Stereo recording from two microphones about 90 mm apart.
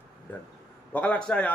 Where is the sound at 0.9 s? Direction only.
15° left (ahead or behind).